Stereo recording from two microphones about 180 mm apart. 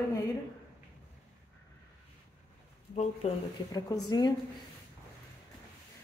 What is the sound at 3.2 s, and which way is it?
Speech, 35° left (ahead or behind).